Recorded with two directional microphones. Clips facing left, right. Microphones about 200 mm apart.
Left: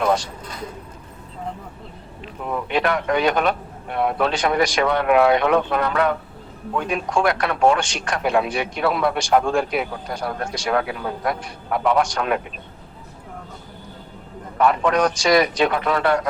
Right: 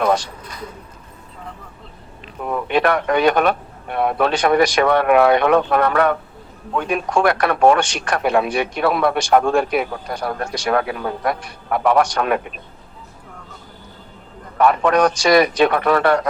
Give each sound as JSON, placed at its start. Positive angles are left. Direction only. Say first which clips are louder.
{"t": 2.6, "sound": "speech", "louder": "right 4 dB", "side_deg": -60}
{"t": 14.6, "sound": "speech", "louder": "right 3 dB", "side_deg": -60}